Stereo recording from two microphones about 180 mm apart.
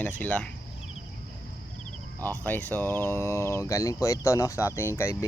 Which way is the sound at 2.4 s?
10° left (ahead or behind).